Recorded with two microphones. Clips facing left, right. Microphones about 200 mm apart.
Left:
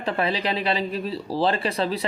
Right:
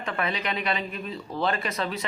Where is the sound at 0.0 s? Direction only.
30° left (ahead or behind).